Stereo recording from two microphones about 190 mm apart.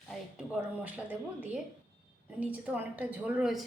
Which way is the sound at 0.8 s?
10° right (ahead or behind).